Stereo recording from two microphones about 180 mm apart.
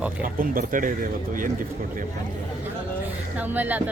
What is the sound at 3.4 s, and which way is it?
Speech, 10° right (ahead or behind).